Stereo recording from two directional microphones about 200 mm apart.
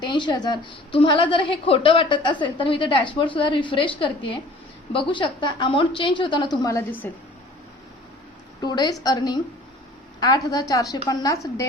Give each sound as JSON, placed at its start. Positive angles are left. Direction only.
{"t": 0.0, "sound": "a woman's voice", "side_deg": 20}
{"t": 8.6, "sound": "a woman's voice", "side_deg": 20}